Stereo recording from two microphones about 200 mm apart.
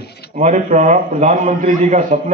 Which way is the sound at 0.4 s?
35° right (ahead or behind).